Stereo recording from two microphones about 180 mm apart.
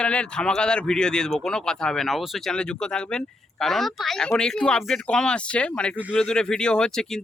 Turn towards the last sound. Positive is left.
turn(degrees=5)  # may be behind; listen again after turning